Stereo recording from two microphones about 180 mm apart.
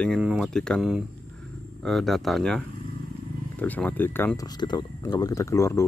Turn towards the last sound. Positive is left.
turn(degrees=15)  # may be behind; listen again after turning